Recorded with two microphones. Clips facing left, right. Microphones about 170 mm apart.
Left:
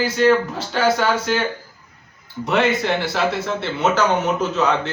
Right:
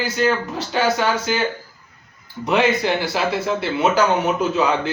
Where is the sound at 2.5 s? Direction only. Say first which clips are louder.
Right 1 dB; centre (ahead or behind).